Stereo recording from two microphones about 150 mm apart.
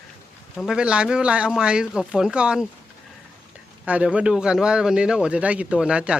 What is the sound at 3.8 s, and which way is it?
A man's voice, 10° right (ahead or behind).